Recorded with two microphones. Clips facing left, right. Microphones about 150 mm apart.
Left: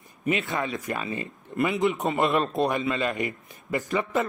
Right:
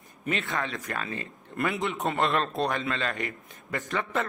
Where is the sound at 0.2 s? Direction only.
Centre (ahead or behind).